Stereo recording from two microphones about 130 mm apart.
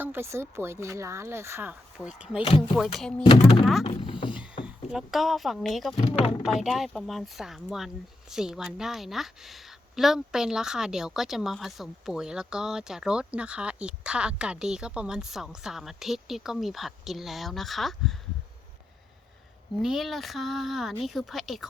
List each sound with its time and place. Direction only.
0.0 s speech: 15° right (ahead or behind)
2.0 s a woman's voice: 5° right (ahead or behind)
3.2 s speech: 45° left (ahead or behind)
4.9 s a woman's voice: 5° right (ahead or behind)
6.0 s speech: 55° left (ahead or behind)
6.4 s a woman's voice: centre (ahead or behind)
19.8 s a woman's voice: centre (ahead or behind)